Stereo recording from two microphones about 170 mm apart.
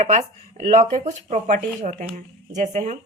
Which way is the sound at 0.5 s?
40° right (ahead or behind).